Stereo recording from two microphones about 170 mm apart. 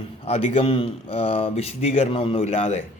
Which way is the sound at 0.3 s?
35° left (ahead or behind).